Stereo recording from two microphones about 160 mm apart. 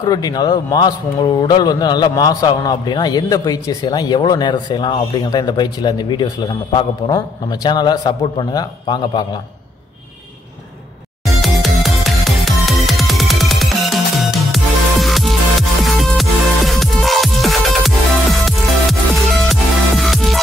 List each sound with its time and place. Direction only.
0.0 s a man's voice: 25° left (ahead or behind)
11.2 s music: centre (ahead or behind)